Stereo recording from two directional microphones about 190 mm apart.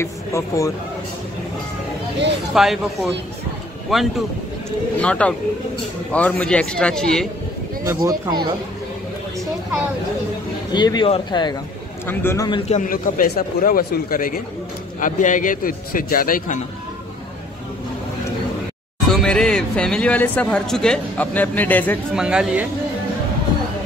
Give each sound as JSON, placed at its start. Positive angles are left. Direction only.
{"t": 0.0, "sound": "speech", "side_deg": 15}
{"t": 2.5, "sound": "a man's voice", "side_deg": 0}
{"t": 7.8, "sound": "speech", "side_deg": -15}
{"t": 10.7, "sound": "speech", "side_deg": 25}
{"t": 12.1, "sound": "speech", "side_deg": 10}
{"t": 12.4, "sound": "speech", "side_deg": 30}
{"t": 19.1, "sound": "speech", "side_deg": 5}
{"t": 22.1, "sound": "a man's voice", "side_deg": -5}